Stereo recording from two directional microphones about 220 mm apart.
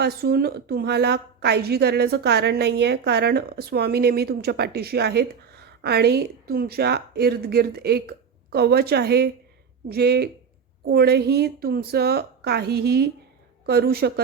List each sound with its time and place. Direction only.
0.0 s a woman's voice: 45° right (ahead or behind)